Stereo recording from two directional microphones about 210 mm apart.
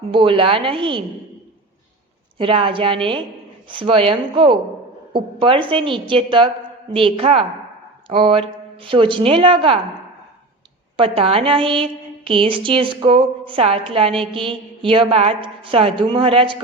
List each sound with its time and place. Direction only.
0.1 s a woman's voice: 25° right (ahead or behind)
2.4 s a woman's voice: 25° right (ahead or behind)
10.9 s a woman's voice: 25° right (ahead or behind)